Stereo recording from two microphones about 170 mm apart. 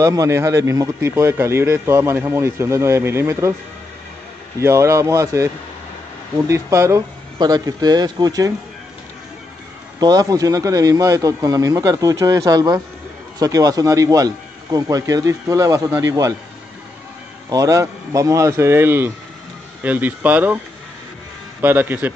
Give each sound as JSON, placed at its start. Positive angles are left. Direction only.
{"t": 0.0, "sound": "speech", "side_deg": -20}
{"t": 4.6, "sound": "speech", "side_deg": -15}
{"t": 9.9, "sound": "speech", "side_deg": -20}
{"t": 17.5, "sound": "speech", "side_deg": -20}